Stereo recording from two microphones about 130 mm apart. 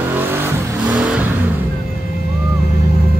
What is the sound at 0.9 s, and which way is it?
Vehicle, 10° right (ahead or behind).